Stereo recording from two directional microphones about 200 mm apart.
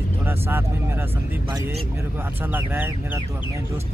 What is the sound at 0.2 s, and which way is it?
Speech, 10° right (ahead or behind).